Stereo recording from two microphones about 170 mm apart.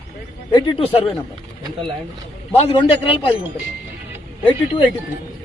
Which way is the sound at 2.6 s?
30° left (ahead or behind).